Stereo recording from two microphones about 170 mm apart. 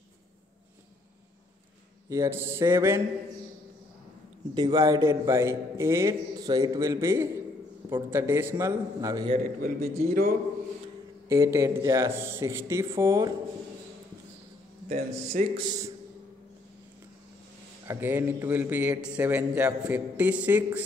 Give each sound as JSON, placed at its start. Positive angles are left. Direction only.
{"t": 2.0, "sound": "a man's voice", "side_deg": -15}
{"t": 4.6, "sound": "a man's voice", "side_deg": -20}
{"t": 9.6, "sound": "a man's voice", "side_deg": -60}
{"t": 11.2, "sound": "a man's voice", "side_deg": -15}
{"t": 14.9, "sound": "speech", "side_deg": -50}
{"t": 15.6, "sound": "a man's voice", "side_deg": -20}
{"t": 17.8, "sound": "a man's voice", "side_deg": -10}